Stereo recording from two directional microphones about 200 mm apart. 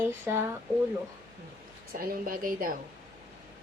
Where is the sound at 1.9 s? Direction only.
45° right (ahead or behind).